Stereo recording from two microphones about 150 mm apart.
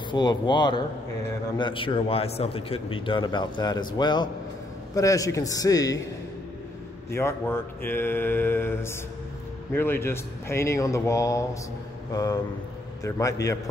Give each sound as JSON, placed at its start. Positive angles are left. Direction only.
{"t": 0.1, "sound": "a man's voice", "side_deg": 30}
{"t": 7.2, "sound": "a man's voice", "side_deg": 15}